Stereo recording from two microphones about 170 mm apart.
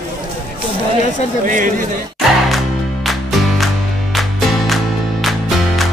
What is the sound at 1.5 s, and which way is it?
Speech, 50° right (ahead or behind).